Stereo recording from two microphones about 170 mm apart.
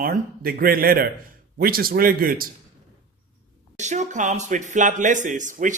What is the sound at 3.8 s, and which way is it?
Speech, 45° right (ahead or behind).